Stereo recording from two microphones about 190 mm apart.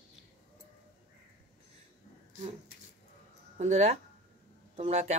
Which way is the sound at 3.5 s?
40° right (ahead or behind).